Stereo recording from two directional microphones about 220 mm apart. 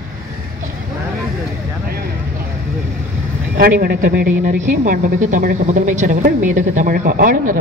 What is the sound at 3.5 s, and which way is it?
A woman's voice, 45° right (ahead or behind).